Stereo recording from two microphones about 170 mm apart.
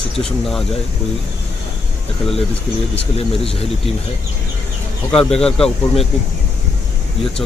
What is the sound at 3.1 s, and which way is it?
Speech, 35° left (ahead or behind).